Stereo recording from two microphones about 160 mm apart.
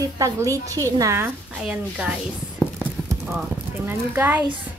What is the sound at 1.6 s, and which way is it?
Speech, 5° right (ahead or behind).